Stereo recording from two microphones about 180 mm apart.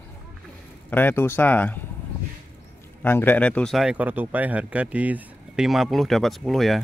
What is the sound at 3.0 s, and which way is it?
Speech, 10° left (ahead or behind).